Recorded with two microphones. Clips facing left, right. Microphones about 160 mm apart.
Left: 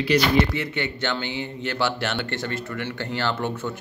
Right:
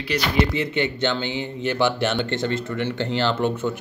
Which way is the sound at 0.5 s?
20° right (ahead or behind).